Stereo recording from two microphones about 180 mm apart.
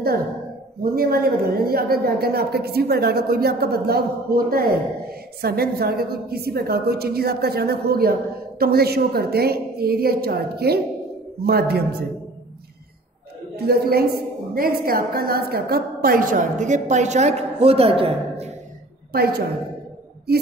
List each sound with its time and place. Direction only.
0.9 s a woman's voice: 55° right (ahead or behind)
13.6 s a woman's voice: 60° right (ahead or behind); by 18.5 s 30° right (ahead or behind)
19.1 s a woman's voice: 60° right (ahead or behind)